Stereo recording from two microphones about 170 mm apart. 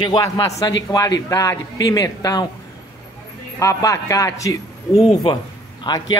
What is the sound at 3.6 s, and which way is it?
A man's voice, 15° left (ahead or behind).